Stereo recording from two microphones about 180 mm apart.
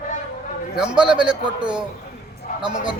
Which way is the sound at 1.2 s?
5° right (ahead or behind).